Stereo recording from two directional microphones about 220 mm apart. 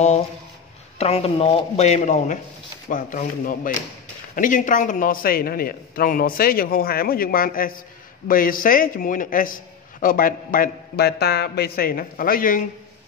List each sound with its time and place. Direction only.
0.9 s a man's voice: 25° left (ahead or behind)